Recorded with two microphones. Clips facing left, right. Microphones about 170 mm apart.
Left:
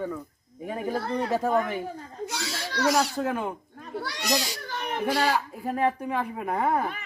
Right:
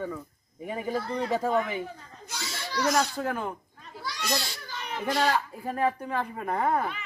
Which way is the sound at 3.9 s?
65° left (ahead or behind).